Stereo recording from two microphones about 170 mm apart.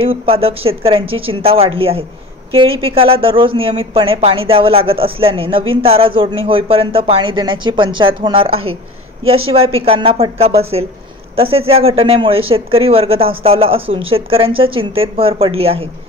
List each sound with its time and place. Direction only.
0.0 s speech: 35° right (ahead or behind)